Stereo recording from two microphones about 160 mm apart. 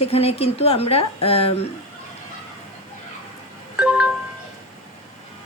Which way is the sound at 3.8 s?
5° right (ahead or behind).